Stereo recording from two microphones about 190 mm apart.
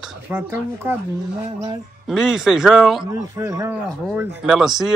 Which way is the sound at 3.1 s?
15° right (ahead or behind).